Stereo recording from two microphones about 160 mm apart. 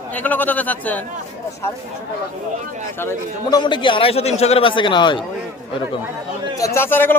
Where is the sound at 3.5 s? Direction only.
30° left (ahead or behind).